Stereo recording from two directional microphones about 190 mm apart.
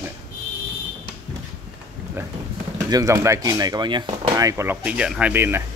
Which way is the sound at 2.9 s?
15° right (ahead or behind).